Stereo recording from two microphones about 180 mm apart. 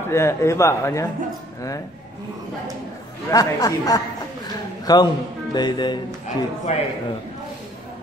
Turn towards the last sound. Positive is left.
turn(degrees=35)  # may be behind; listen again after turning